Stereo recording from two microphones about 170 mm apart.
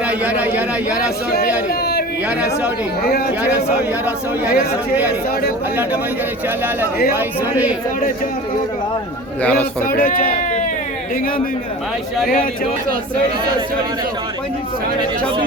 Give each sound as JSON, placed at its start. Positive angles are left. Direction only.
{"t": 0.1, "sound": "speech", "side_deg": -10}
{"t": 3.0, "sound": "speech", "side_deg": 65}
{"t": 4.0, "sound": "speech", "side_deg": -5}
{"t": 7.1, "sound": "speech", "side_deg": -10}
{"t": 9.4, "sound": "a man's voice", "side_deg": 10}
{"t": 9.8, "sound": "speech", "side_deg": 55}